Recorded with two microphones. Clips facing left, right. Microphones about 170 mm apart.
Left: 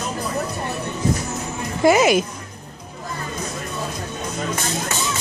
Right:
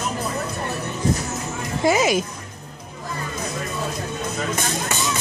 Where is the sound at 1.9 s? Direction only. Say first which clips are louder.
Left 4 dB; 65° left (ahead or behind).